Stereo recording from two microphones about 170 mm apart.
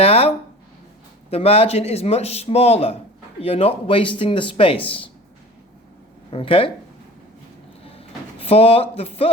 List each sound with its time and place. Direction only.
0.0 s a man's voice: 35° left (ahead or behind)
6.3 s a man's voice: 30° left (ahead or behind)
7.9 s a sound: 35° left (ahead or behind)